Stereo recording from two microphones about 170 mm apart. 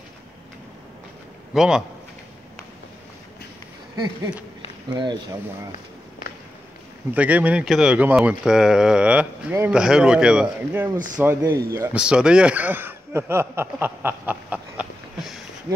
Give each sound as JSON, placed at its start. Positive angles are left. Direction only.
{"t": 1.5, "sound": "speech", "side_deg": -5}
{"t": 4.9, "sound": "speech", "side_deg": -25}
{"t": 7.2, "sound": "speech", "side_deg": -10}
{"t": 12.0, "sound": "speech", "side_deg": -5}